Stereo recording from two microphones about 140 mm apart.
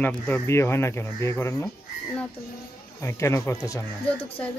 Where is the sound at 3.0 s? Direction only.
20° left (ahead or behind).